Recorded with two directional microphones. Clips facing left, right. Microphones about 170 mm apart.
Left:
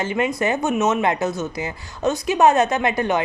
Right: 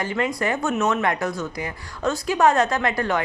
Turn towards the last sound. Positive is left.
turn(degrees=20)  # may be behind; listen again after turning